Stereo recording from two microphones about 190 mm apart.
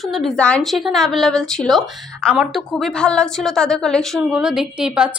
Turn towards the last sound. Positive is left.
turn(degrees=-5)  # may be behind; listen again after turning